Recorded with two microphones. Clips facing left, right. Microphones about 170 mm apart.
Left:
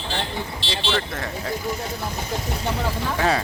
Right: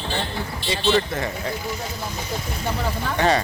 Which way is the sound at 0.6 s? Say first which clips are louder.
Right 4 dB; 90° left.